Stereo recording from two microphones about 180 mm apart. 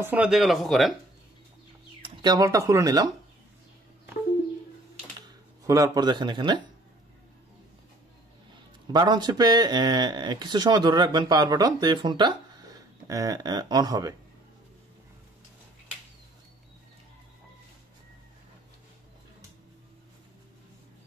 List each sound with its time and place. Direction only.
0.0 s speech: 10° right (ahead or behind)
2.0 s speech: 20° right (ahead or behind)
5.7 s speech: 20° right (ahead or behind)
8.9 s speech: 25° right (ahead or behind)